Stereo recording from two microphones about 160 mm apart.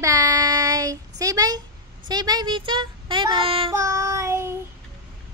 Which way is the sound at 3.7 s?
20° right (ahead or behind).